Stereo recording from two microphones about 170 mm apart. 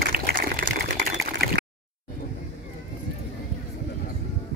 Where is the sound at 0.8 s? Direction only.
65° right (ahead or behind).